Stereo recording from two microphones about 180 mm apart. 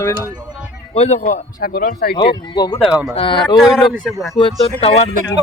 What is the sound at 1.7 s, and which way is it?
Speech, 55° left (ahead or behind).